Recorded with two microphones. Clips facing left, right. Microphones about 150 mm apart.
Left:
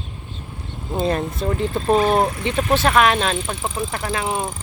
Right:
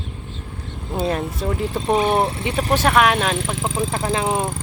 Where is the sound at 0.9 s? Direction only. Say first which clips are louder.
Left 1 dB; 5° right (ahead or behind).